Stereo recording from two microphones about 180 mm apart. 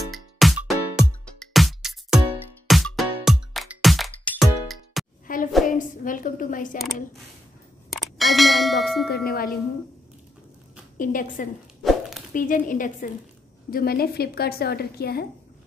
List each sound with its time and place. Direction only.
0.1 s music: centre (ahead or behind)
5.2 s hands: 50° left (ahead or behind)
5.7 s a woman's voice: 50° left (ahead or behind)
7.9 s a sound: centre (ahead or behind)
9.1 s a woman's voice: 55° left (ahead or behind)
11.0 s a woman's voice: 50° left (ahead or behind)
11.8 s a sound: centre (ahead or behind)
12.4 s a woman's voice: 50° left (ahead or behind)